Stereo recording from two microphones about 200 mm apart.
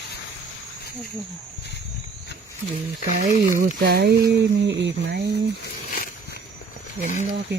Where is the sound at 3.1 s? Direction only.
40° right (ahead or behind); by 5.4 s 55° right (ahead or behind).